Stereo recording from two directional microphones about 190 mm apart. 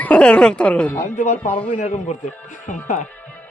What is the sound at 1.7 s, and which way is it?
A man's voice, 35° left (ahead or behind).